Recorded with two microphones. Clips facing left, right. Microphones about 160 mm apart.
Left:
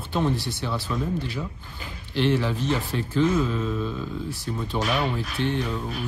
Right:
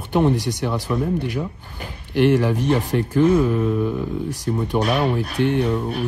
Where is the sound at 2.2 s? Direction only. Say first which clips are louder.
Right 6 dB; 55° right (ahead or behind).